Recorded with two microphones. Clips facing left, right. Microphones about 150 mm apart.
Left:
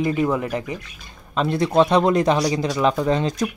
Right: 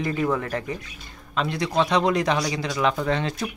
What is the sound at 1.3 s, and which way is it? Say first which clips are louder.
Speech: left 5 dB; 40° left (ahead or behind).